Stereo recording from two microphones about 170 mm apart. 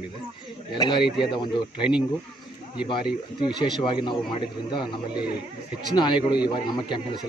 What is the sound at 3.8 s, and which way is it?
Speech, 30° left (ahead or behind).